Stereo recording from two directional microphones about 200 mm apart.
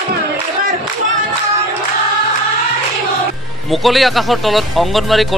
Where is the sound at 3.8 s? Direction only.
Centre (ahead or behind).